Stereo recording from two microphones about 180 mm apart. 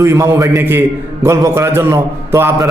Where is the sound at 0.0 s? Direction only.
15° right (ahead or behind).